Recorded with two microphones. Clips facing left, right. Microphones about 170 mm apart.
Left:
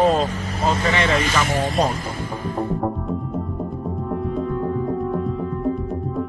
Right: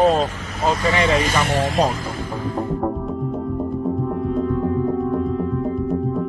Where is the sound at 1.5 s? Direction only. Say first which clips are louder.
Right 2 dB; 90° right.